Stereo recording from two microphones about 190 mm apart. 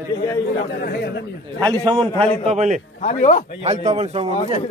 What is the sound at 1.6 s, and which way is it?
Speech, 20° right (ahead or behind).